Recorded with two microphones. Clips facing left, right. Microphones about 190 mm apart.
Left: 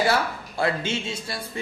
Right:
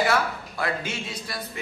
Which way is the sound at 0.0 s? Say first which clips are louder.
Left 1 dB; 30° left (ahead or behind).